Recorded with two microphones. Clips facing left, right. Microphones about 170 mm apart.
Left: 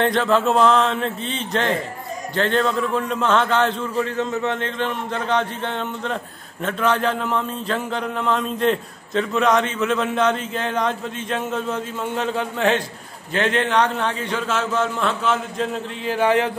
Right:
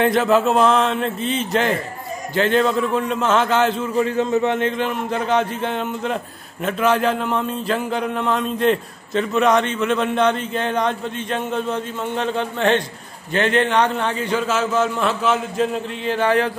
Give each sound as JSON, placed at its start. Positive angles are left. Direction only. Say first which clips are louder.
{"t": 0.0, "sound": "a man's voice", "louder": "right 2 dB", "side_deg": -10}
{"t": 16.2, "sound": "speech", "louder": "even", "side_deg": 15}